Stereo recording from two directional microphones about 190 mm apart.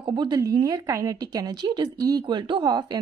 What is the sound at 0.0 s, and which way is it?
Speech, 25° right (ahead or behind).